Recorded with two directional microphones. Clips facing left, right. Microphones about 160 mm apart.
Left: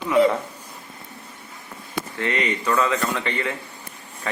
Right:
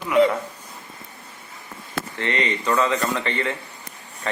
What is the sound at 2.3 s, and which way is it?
Speech, 25° right (ahead or behind).